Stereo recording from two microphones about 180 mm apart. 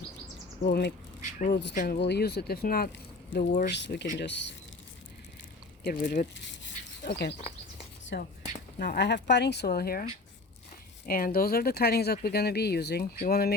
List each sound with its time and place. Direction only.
0.6 s speech: 65° left (ahead or behind)
1.7 s speech: 50° left (ahead or behind)
2.0 s speech: 65° left (ahead or behind); by 3.7 s 50° left (ahead or behind)
3.7 s speech: 75° left (ahead or behind)
5.8 s speech: 50° left (ahead or behind)
7.0 s speech: 65° left (ahead or behind)